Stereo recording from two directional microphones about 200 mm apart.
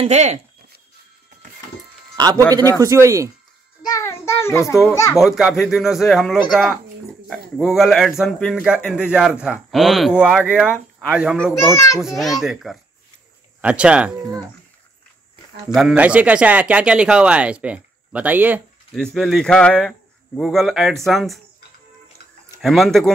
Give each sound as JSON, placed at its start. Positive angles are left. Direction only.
{"t": 0.0, "sound": "speech", "side_deg": -35}
{"t": 2.1, "sound": "a man's voice", "side_deg": -20}
{"t": 3.8, "sound": "child singing", "side_deg": 15}
{"t": 5.1, "sound": "speech", "side_deg": 0}
{"t": 11.6, "sound": "a child's voice", "side_deg": 15}
{"t": 12.0, "sound": "speech", "side_deg": 0}
{"t": 15.7, "sound": "speech", "side_deg": -5}
{"t": 22.6, "sound": "speech", "side_deg": 0}